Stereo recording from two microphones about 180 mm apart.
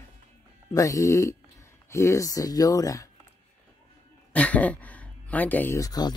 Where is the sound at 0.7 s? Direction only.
20° left (ahead or behind).